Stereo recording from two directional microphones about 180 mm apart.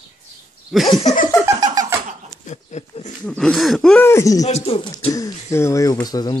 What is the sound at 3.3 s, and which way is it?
Speech, 5° left (ahead or behind).